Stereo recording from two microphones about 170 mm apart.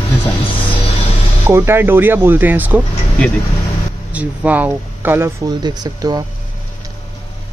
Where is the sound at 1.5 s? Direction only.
15° right (ahead or behind).